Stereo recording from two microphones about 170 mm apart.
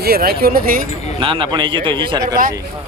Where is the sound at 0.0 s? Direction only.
65° right (ahead or behind).